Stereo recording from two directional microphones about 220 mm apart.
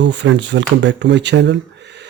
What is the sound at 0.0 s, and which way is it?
Speech, 55° right (ahead or behind).